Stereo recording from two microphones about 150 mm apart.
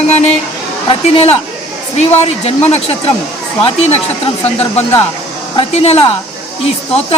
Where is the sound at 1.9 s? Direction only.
45° left (ahead or behind).